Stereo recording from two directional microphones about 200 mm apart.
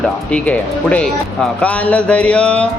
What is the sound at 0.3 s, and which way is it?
Mantra, 5° left (ahead or behind).